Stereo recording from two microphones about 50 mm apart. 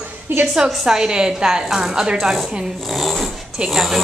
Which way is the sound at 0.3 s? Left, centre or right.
Right.